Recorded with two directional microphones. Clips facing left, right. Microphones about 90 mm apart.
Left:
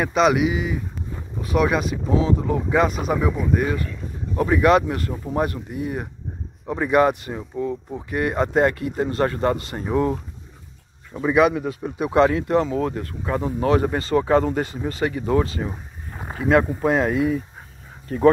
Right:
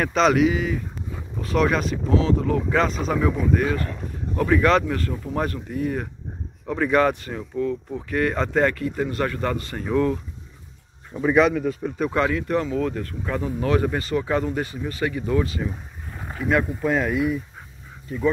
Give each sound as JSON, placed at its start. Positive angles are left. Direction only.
{"t": 0.0, "sound": "speech", "side_deg": 10}
{"t": 11.1, "sound": "speech", "side_deg": 10}
{"t": 18.0, "sound": "speech", "side_deg": 60}